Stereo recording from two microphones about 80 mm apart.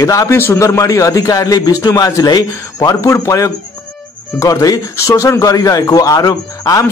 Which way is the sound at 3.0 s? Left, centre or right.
Left.